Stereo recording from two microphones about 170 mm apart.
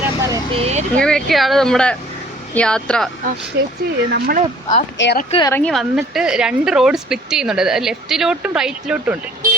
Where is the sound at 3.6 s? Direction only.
75° right (ahead or behind).